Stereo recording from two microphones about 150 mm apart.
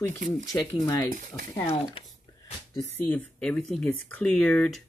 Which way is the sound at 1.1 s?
60° right (ahead or behind).